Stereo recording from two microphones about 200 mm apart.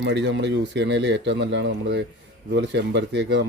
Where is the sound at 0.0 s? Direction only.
65° right (ahead or behind).